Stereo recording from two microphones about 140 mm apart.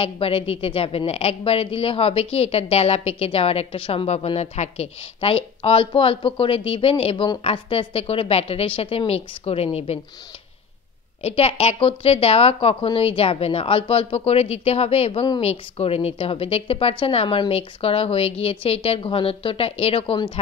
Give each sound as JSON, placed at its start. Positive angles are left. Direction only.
{"t": 0.0, "sound": "a woman's voice", "side_deg": 40}
{"t": 11.2, "sound": "a woman's voice", "side_deg": 45}